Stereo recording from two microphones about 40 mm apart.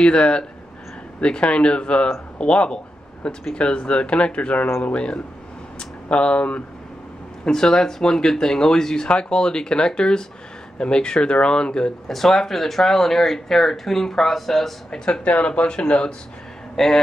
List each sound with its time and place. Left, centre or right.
0.0 s speech: left
7.4 s speech: centre
12.1 s speech: centre
14.9 s speech: centre
15.2 s speech: left
16.7 s speech: centre